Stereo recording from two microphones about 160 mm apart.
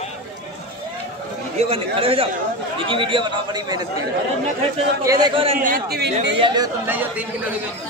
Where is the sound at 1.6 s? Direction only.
35° right (ahead or behind).